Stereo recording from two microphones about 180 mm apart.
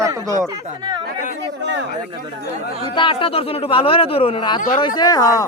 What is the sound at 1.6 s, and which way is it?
Speech, 75° right (ahead or behind).